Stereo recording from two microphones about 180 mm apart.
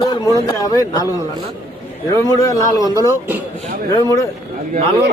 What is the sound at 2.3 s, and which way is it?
Speech, 20° left (ahead or behind).